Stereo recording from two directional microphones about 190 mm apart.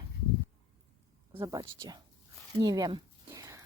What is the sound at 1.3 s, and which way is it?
Speech, 20° right (ahead or behind).